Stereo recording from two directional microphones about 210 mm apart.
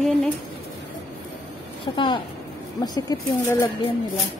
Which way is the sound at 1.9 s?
20° left (ahead or behind).